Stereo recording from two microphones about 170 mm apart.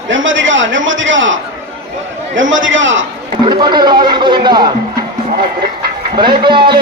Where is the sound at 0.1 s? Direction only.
90° right.